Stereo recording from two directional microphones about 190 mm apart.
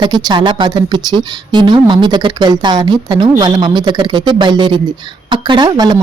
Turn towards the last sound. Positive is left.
turn(degrees=-25)  # may be behind; listen again after turning